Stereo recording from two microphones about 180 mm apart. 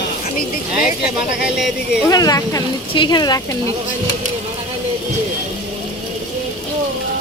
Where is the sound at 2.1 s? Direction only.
20° left (ahead or behind).